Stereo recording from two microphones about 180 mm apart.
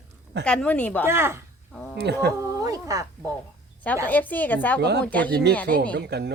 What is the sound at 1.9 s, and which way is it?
Speech, 65° right (ahead or behind).